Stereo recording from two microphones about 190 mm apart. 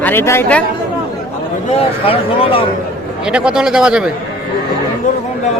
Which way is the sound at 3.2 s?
5° right (ahead or behind).